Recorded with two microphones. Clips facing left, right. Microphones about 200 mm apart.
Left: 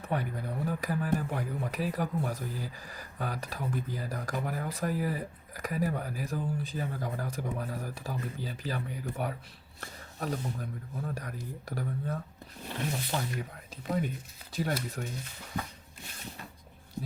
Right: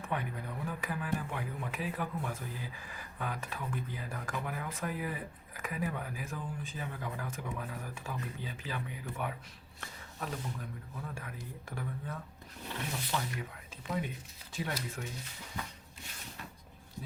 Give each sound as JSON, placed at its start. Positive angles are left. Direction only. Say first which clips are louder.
{"t": 0.0, "sound": "speech", "louder": "left 4 dB", "side_deg": 35}